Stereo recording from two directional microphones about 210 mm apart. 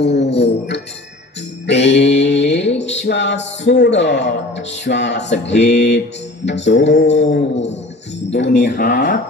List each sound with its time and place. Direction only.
0.0 s music: 55° left (ahead or behind)
1.7 s a sound: 55° left (ahead or behind)
6.4 s mantra: 55° left (ahead or behind)
8.3 s speech: 55° left (ahead or behind); by 9.2 s 40° left (ahead or behind)